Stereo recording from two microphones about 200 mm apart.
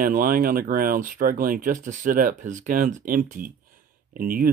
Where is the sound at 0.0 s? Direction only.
45° right (ahead or behind).